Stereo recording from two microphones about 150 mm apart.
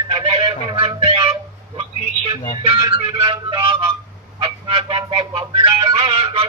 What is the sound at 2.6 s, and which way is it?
Music, 35° right (ahead or behind).